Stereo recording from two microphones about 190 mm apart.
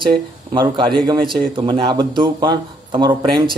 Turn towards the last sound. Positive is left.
turn(degrees=-25)  # may be behind; listen again after turning